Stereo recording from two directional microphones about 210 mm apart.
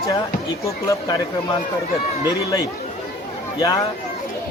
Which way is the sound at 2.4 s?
15° left (ahead or behind).